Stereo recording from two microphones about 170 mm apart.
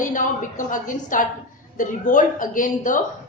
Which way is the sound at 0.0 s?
50° left (ahead or behind).